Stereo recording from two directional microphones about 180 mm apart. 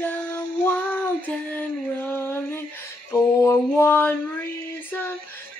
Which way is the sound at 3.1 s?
15° left (ahead or behind).